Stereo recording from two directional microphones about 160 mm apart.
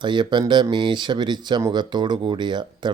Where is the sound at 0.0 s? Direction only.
30° right (ahead or behind).